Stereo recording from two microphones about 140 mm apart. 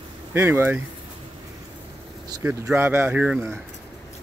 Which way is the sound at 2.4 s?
15° right (ahead or behind).